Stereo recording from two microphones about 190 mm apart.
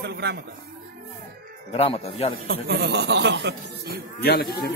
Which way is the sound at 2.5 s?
55° right (ahead or behind).